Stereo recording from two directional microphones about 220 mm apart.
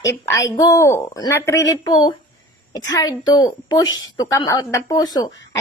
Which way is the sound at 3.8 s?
60° left (ahead or behind).